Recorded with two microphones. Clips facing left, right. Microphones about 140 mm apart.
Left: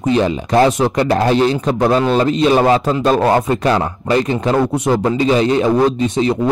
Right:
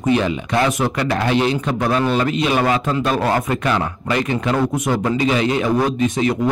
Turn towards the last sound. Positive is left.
turn(degrees=30)  # may be behind; listen again after turning